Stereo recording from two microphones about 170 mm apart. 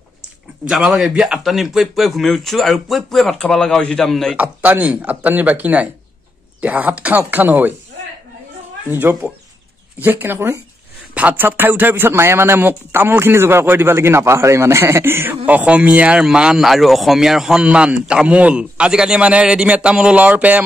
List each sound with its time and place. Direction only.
0.7 s a man's voice: 5° right (ahead or behind)
4.4 s speech: 10° right (ahead or behind)
8.8 s speech: 10° right (ahead or behind)